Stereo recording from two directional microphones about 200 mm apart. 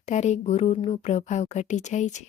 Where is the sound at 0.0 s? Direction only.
35° left (ahead or behind).